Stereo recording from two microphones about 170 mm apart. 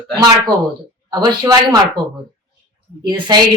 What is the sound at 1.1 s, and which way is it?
Speech, 25° right (ahead or behind).